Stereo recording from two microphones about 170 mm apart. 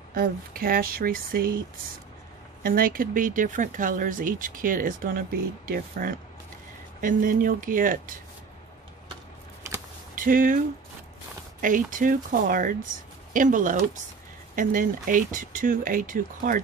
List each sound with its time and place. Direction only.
0.1 s speech: 60° right (ahead or behind)
2.6 s speech: 55° right (ahead or behind)
10.1 s speech: 55° right (ahead or behind)
11.6 s speech: 50° right (ahead or behind)